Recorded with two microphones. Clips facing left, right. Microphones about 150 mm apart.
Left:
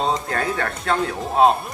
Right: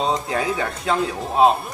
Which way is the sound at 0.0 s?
5° right (ahead or behind).